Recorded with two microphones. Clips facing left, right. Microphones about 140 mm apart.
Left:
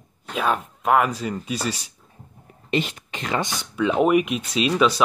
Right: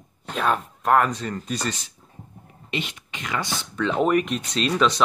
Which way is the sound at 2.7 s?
40° left (ahead or behind).